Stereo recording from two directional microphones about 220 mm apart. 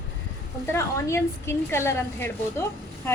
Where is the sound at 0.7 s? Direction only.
10° left (ahead or behind).